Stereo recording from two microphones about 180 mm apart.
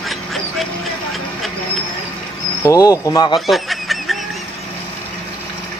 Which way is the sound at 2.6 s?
20° left (ahead or behind).